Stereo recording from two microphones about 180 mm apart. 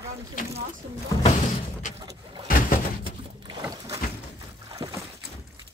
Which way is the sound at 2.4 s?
50° left (ahead or behind).